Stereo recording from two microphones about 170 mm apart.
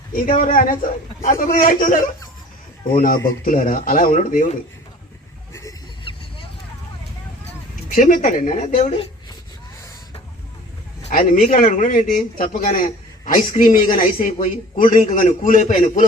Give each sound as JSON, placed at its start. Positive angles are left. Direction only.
{"t": 0.3, "sound": "a man's voice", "side_deg": 55}
{"t": 3.4, "sound": "a man's voice", "side_deg": 50}
{"t": 7.9, "sound": "a man's voice", "side_deg": 50}
{"t": 11.1, "sound": "a man's voice", "side_deg": 55}